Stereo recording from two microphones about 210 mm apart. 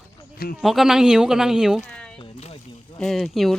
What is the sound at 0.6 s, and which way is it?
A woman's voice, centre (ahead or behind).